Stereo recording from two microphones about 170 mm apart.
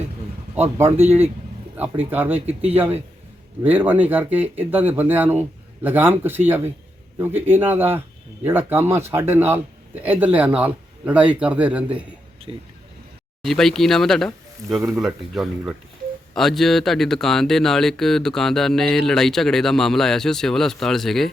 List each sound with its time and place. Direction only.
0.5 s a man's voice: 10° right (ahead or behind)
12.5 s speech: 30° right (ahead or behind)
13.4 s speech: centre (ahead or behind)